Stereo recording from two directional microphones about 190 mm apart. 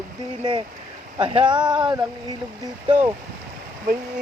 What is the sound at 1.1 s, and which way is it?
Speech, 25° right (ahead or behind).